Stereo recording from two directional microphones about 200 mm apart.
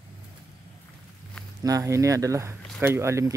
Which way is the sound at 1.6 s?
15° right (ahead or behind).